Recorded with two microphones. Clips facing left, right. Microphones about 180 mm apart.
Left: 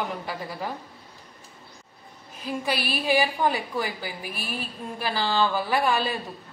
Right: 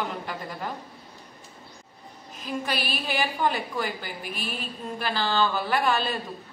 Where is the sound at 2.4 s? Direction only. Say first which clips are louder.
Left 2 dB; 10° left (ahead or behind).